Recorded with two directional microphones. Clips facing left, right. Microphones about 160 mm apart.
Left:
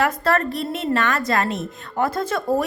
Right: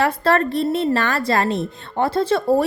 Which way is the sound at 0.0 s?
30° right (ahead or behind).